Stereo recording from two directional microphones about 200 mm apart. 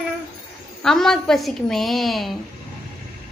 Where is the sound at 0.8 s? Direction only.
Centre (ahead or behind).